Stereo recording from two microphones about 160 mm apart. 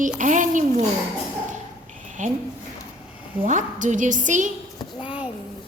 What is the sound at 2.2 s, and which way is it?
Speech, 50° right (ahead or behind).